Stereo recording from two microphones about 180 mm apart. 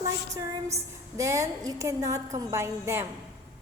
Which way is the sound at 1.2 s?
15° right (ahead or behind).